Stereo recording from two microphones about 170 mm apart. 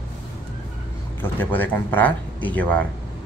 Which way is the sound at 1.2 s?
10° left (ahead or behind).